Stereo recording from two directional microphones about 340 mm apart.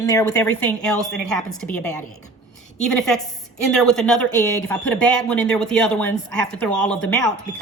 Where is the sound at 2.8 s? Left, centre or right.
Centre.